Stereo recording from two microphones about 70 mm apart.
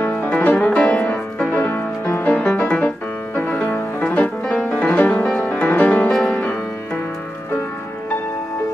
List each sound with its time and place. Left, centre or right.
0.0 s music: left
1.5 s music: left
2.2 s music: left
6.0 s music: centre